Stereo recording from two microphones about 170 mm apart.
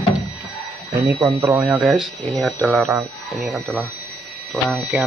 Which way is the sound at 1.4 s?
10° right (ahead or behind).